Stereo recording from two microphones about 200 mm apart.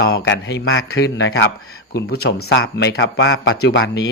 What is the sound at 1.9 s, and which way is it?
Speech, 50° left (ahead or behind).